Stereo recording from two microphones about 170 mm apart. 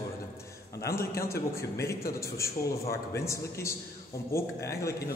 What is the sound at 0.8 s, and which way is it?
A man's voice, 15° left (ahead or behind).